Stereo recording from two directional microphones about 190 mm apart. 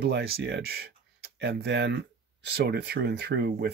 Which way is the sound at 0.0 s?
60° right (ahead or behind).